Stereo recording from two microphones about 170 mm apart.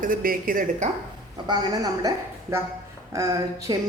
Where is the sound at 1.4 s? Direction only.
20° right (ahead or behind).